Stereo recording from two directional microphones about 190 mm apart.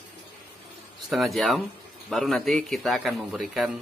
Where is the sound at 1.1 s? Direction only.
Centre (ahead or behind).